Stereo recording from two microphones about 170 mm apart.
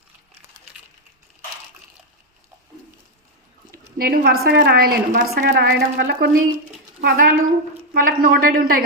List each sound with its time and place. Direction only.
3.7 s a woman's voice: 60° right (ahead or behind)
7.0 s a woman's voice: 55° right (ahead or behind)